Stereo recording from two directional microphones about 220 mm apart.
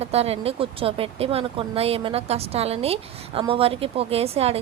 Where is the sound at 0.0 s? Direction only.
30° right (ahead or behind).